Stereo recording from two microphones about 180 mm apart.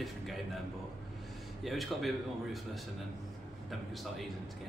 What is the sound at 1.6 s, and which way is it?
A man's voice, centre (ahead or behind).